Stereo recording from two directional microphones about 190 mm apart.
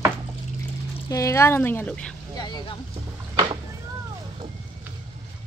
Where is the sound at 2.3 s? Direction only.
20° left (ahead or behind).